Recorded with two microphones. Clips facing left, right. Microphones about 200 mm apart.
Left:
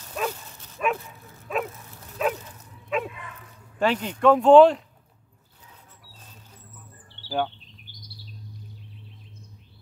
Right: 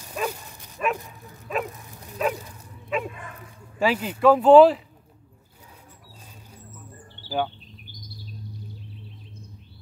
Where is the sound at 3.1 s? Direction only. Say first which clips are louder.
Right 2 dB; 45° right (ahead or behind).